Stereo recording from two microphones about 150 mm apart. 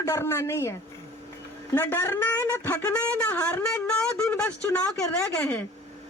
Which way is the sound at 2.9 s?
10° left (ahead or behind).